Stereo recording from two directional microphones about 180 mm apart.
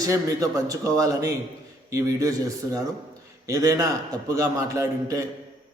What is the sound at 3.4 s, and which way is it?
A man's voice, 20° right (ahead or behind).